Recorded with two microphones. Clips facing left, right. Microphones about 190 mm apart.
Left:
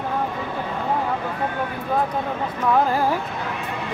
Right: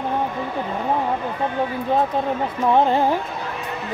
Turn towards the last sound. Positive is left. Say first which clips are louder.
# right 2 dB
turn(degrees=-25)  # may be behind; listen again after turning